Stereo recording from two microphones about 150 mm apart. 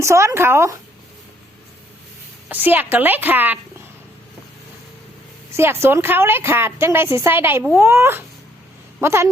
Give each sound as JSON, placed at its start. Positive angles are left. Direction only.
{"t": 0.0, "sound": "speech", "side_deg": -20}
{"t": 2.5, "sound": "a woman's voice", "side_deg": -15}
{"t": 5.5, "sound": "a woman's voice", "side_deg": -15}